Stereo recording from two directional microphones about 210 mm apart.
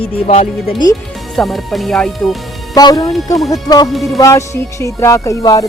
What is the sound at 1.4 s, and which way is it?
Speech, centre (ahead or behind).